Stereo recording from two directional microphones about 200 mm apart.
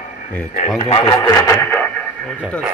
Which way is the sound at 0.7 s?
25° left (ahead or behind).